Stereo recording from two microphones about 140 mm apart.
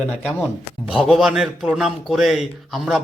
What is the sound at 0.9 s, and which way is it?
A man's voice, 5° right (ahead or behind).